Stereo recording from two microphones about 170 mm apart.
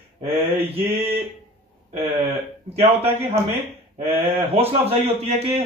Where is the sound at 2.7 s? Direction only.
35° right (ahead or behind).